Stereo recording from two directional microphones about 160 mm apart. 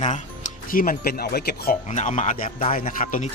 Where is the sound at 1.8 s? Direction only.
50° left (ahead or behind).